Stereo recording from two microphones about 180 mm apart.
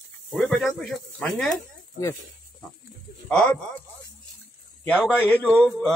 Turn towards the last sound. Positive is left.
turn(degrees=5)  # may be behind; listen again after turning